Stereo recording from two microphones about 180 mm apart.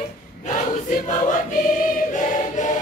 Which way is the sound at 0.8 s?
45° left (ahead or behind).